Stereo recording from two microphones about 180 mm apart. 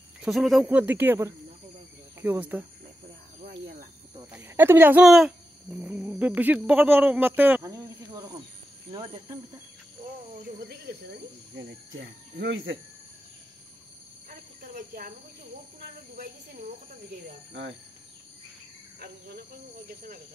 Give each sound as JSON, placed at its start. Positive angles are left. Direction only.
{"t": 0.2, "sound": "speech", "side_deg": 0}
{"t": 4.3, "sound": "speech", "side_deg": -10}
{"t": 10.7, "sound": "cricket", "side_deg": -65}
{"t": 14.7, "sound": "cricket", "side_deg": -45}
{"t": 17.5, "sound": "speech", "side_deg": -75}
{"t": 19.9, "sound": "speech", "side_deg": -55}